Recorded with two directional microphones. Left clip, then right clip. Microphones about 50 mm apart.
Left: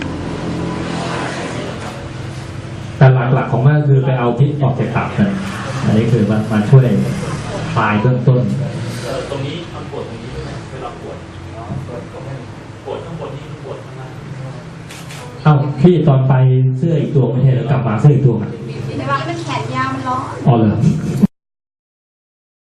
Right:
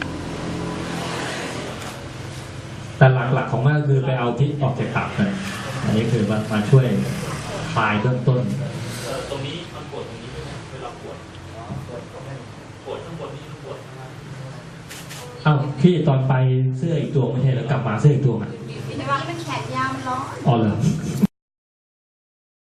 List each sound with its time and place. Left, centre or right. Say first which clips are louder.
0.1 s vehicle: left 6 dB; centre
3.0 s a man's voice: left 3 dB; centre
9.0 s a sound: left 6 dB; centre
15.4 s a sound: left 6 dB; centre
16.9 s a man's voice: left 6 dB; centre
17.2 s a man's voice: left 6 dB; centre
18.9 s vehicle: left 5 dB; centre
19.9 s a sound: left 6 dB; centre
20.5 s a man's voice: left 6 dB; centre